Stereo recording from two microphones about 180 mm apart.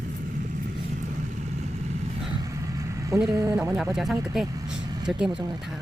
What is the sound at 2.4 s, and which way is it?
Vehicle, 20° right (ahead or behind).